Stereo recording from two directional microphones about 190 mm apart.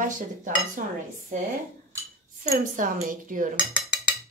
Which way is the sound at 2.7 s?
45° right (ahead or behind).